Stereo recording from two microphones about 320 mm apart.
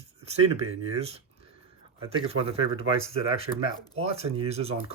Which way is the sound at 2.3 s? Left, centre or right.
Centre.